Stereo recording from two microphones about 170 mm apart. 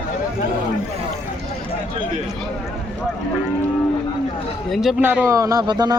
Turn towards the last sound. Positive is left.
turn(degrees=-25)  # may be behind; listen again after turning